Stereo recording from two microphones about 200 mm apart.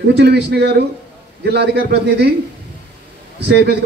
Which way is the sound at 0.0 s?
55° right (ahead or behind).